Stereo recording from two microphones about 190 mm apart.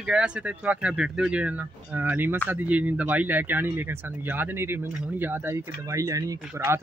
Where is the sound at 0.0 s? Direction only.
5° right (ahead or behind).